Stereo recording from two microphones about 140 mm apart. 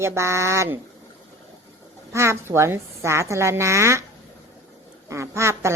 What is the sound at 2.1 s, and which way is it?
Speech, 20° right (ahead or behind).